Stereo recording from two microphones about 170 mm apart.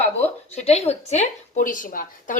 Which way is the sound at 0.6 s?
40° left (ahead or behind).